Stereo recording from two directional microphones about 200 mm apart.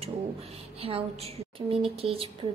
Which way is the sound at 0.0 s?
30° right (ahead or behind).